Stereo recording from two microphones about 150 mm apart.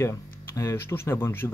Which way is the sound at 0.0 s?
20° left (ahead or behind).